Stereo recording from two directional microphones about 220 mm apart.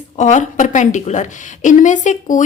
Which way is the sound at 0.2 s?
35° left (ahead or behind).